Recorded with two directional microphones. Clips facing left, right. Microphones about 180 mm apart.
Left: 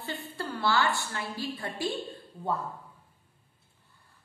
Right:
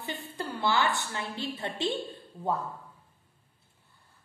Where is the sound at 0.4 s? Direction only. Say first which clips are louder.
Even; 20° right (ahead or behind).